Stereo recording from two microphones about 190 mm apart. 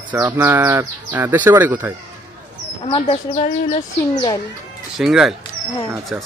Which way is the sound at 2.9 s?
35° left (ahead or behind).